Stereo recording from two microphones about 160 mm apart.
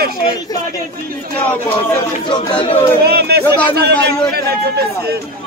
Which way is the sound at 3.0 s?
80° right.